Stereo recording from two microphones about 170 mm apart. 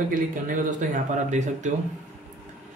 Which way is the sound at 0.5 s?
50° right (ahead or behind).